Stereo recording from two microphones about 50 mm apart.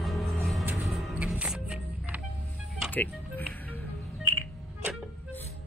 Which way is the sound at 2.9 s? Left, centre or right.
Left.